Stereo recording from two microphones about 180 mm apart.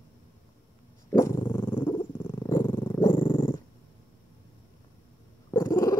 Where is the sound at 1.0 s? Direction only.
15° left (ahead or behind).